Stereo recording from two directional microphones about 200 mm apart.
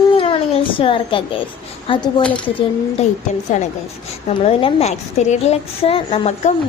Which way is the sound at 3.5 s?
35° left (ahead or behind).